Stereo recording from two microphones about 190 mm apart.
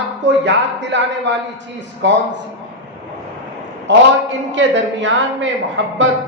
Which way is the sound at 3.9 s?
70° right (ahead or behind).